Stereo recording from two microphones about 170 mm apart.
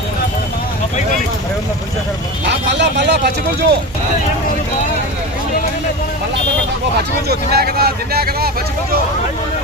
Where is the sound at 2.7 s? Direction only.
90° right.